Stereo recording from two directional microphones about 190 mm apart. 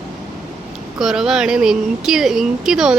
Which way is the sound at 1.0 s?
Centre (ahead or behind).